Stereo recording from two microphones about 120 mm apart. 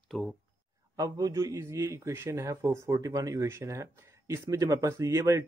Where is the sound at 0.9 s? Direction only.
30° right (ahead or behind).